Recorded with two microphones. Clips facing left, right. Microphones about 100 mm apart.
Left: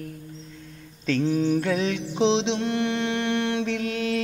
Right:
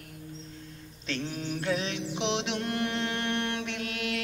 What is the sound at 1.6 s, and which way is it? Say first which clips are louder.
Mantra: left 5 dB; 50° left (ahead or behind).